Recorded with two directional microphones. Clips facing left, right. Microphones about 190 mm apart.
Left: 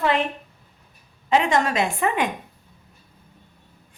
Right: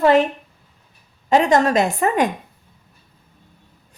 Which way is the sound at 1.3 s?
45° right (ahead or behind).